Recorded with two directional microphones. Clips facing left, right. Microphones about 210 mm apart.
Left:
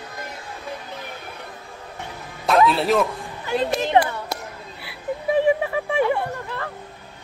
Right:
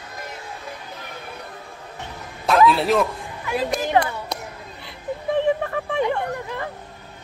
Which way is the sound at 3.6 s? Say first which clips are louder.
Left 1 dB; 25° left (ahead or behind).